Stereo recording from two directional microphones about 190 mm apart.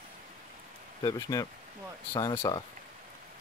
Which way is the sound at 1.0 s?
20° left (ahead or behind).